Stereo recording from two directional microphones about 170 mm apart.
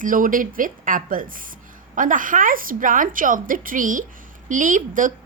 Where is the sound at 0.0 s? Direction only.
50° right (ahead or behind).